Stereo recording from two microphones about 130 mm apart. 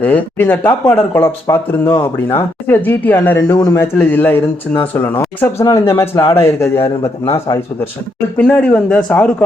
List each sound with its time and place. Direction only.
0.0 s speech: 15° left (ahead or behind)
8.4 s speech: 10° left (ahead or behind)